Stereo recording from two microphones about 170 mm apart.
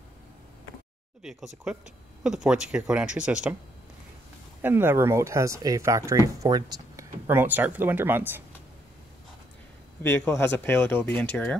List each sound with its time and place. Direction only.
1.2 s speech: centre (ahead or behind)
4.6 s speech: 10° right (ahead or behind)
10.0 s speech: 15° left (ahead or behind)